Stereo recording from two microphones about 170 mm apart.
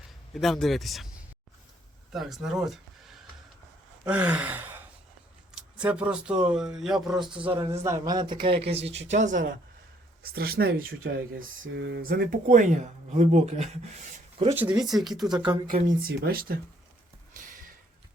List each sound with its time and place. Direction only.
0.3 s speech: centre (ahead or behind)
2.1 s speech: centre (ahead or behind)
4.0 s gasp: 10° right (ahead or behind)
5.5 s speech: 5° right (ahead or behind)
7.3 s a man's voice: 30° right (ahead or behind)
7.7 s a man's voice: 15° right (ahead or behind); by 9.4 s 45° right (ahead or behind)
10.2 s speech: 65° right (ahead or behind)
11.0 s speech: 55° right (ahead or behind)
11.7 s speech: 90° right; by 13.7 s 40° right (ahead or behind)
14.5 s speech: 10° right (ahead or behind)
15.6 s speech: 60° right (ahead or behind)